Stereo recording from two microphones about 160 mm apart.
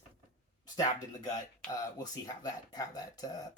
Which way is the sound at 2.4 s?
25° left (ahead or behind).